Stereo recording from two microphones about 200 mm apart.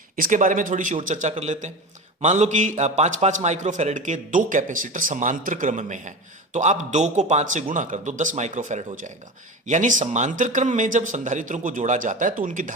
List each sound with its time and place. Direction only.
0.2 s a man's voice: 40° right (ahead or behind)